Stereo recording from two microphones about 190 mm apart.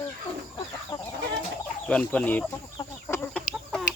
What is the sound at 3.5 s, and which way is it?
Chicken, 5° right (ahead or behind).